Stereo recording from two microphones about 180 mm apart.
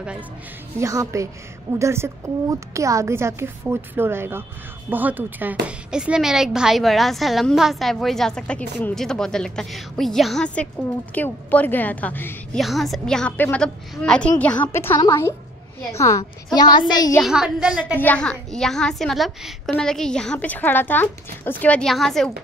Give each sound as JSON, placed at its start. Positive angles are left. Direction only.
{"t": 0.7, "sound": "a woman's voice", "side_deg": -15}
{"t": 12.5, "sound": "a woman's voice", "side_deg": 0}
{"t": 17.2, "sound": "a woman's voice", "side_deg": -5}
{"t": 17.9, "sound": "a woman's voice", "side_deg": 10}